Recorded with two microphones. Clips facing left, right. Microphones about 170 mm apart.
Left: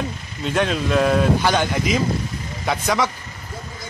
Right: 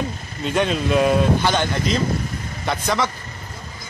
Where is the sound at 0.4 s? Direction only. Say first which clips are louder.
Even; centre (ahead or behind).